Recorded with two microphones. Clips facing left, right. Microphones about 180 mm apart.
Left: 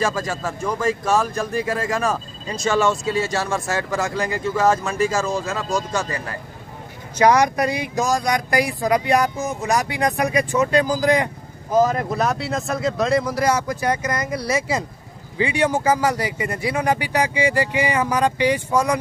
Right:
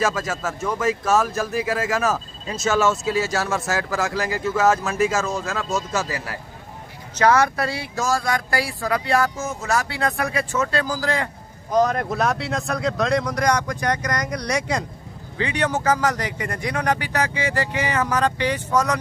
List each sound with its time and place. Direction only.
0.0 s speech: centre (ahead or behind)
7.2 s speech: 15° left (ahead or behind)
11.7 s speech: 5° left (ahead or behind)